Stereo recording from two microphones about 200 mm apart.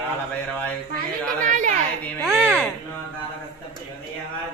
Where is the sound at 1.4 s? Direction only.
40° right (ahead or behind).